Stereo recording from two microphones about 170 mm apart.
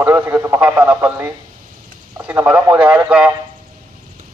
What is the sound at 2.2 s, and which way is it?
Speech, 10° right (ahead or behind).